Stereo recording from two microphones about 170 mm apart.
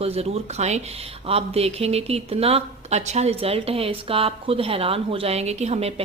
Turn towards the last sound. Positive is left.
turn(degrees=-40)  # may be behind; listen again after turning